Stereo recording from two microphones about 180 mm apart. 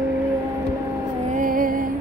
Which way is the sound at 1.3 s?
50° right (ahead or behind).